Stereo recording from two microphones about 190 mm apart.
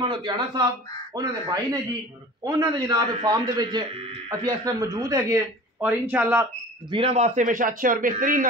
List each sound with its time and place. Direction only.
0.0 s a man's voice: 25° right (ahead or behind); by 6.4 s 10° right (ahead or behind)
6.9 s a man's voice: 30° right (ahead or behind); by 8.5 s 45° right (ahead or behind)